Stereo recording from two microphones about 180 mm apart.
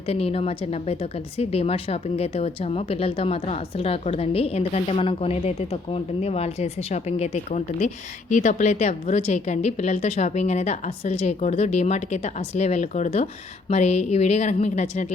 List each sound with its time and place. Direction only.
0.1 s speech: 35° left (ahead or behind)